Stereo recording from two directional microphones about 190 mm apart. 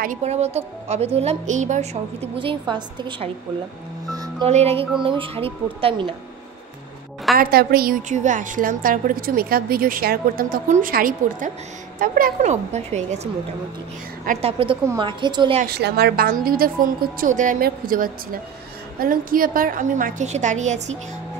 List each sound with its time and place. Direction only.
0.0 s a woman's voice: 40° right (ahead or behind)
2.3 s a woman's voice: 25° right (ahead or behind)
4.5 s a woman's voice: 35° right (ahead or behind)
7.3 s a woman's voice: 55° right (ahead or behind); by 13.3 s 35° right (ahead or behind)
14.4 s a woman's voice: 30° right (ahead or behind)
15.6 s a woman's voice: 55° right (ahead or behind); by 21.0 s 35° right (ahead or behind)